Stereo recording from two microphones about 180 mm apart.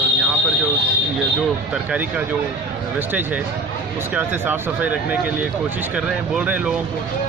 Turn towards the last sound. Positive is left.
turn(degrees=-10)  # may be behind; listen again after turning